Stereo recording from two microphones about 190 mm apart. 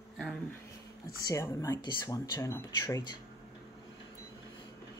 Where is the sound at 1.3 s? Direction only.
15° left (ahead or behind).